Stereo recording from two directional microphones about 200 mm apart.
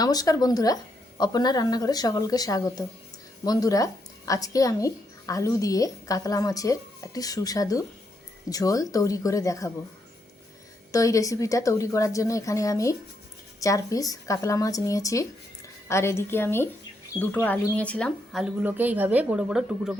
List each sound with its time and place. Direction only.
0.0 s a woman's voice: 20° left (ahead or behind)
10.9 s a woman's voice: 15° left (ahead or behind); by 20.0 s 5° right (ahead or behind)